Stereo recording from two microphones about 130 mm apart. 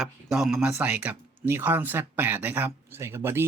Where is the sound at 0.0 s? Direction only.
Centre (ahead or behind).